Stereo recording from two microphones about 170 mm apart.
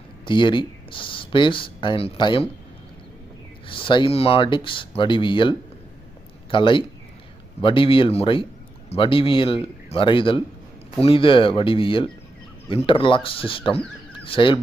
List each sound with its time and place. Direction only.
0.3 s speech: 30° left (ahead or behind)
3.7 s a man's voice: 30° left (ahead or behind)